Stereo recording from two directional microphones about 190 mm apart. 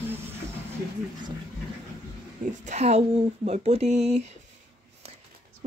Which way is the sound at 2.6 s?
35° right (ahead or behind).